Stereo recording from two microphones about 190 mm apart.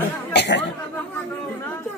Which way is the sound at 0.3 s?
65° left (ahead or behind).